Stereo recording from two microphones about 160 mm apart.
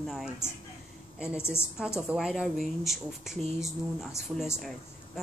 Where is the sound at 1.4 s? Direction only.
15° left (ahead or behind).